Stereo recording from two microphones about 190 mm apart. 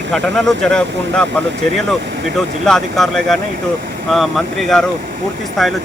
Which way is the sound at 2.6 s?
Centre (ahead or behind).